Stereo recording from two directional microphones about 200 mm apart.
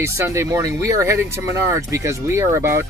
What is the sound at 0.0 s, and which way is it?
Speech, 15° right (ahead or behind).